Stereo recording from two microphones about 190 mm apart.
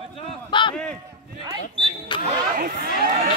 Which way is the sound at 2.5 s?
55° right (ahead or behind).